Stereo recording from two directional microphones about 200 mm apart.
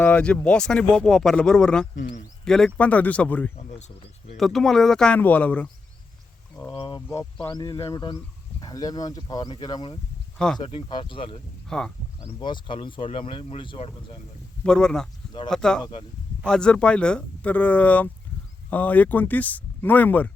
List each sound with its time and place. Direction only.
0.0 s speech: 5° left (ahead or behind)
2.0 s speech: 40° left (ahead or behind)
2.4 s speech: 5° left (ahead or behind)
6.7 s a sound: 25° left (ahead or behind)
7.1 s speech: 20° left (ahead or behind)
10.3 s speech: 5° left (ahead or behind)
10.6 s speech: 25° left (ahead or behind)
11.7 s speech: 5° left (ahead or behind)
12.2 s speech: 25° left (ahead or behind)
14.6 s speech: 5° left (ahead or behind)
15.8 s speech: 25° left (ahead or behind)
16.4 s speech: 5° left (ahead or behind)